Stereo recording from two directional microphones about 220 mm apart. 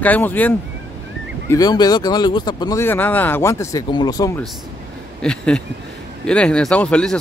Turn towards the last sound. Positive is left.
turn(degrees=5)  # may be behind; listen again after turning